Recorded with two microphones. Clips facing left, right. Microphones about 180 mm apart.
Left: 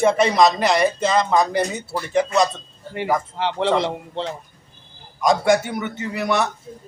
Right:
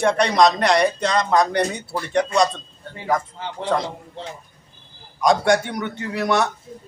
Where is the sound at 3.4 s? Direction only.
75° left (ahead or behind).